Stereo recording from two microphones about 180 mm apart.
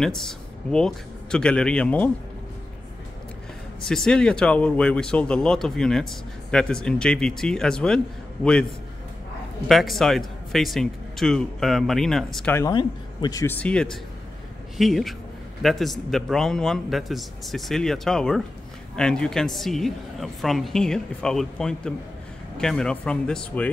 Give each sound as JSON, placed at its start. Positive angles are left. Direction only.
{"t": 0.0, "sound": "speech", "side_deg": 5}
{"t": 3.8, "sound": "speech", "side_deg": 5}
{"t": 9.7, "sound": "speech", "side_deg": 0}
{"t": 12.5, "sound": "speech", "side_deg": 20}
{"t": 13.6, "sound": "speech", "side_deg": 5}